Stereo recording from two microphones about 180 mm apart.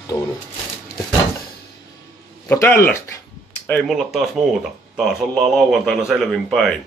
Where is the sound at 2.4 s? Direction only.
15° left (ahead or behind).